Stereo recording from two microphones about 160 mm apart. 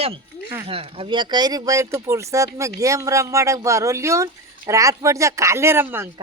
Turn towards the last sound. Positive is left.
turn(degrees=-15)  # may be behind; listen again after turning